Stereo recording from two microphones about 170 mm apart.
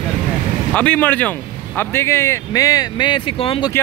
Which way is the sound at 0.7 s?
10° left (ahead or behind).